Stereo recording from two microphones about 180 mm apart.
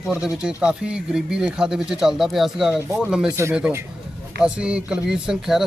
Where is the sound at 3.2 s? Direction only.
15° right (ahead or behind).